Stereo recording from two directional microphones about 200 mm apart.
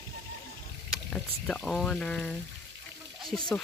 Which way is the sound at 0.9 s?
Centre (ahead or behind).